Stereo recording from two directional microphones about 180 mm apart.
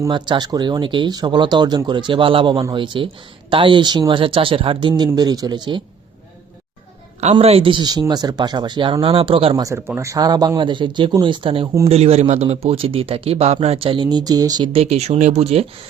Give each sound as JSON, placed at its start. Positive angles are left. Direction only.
{"t": 0.1, "sound": "speech", "side_deg": -25}
{"t": 7.2, "sound": "speech", "side_deg": -35}
{"t": 9.6, "sound": "speech", "side_deg": -15}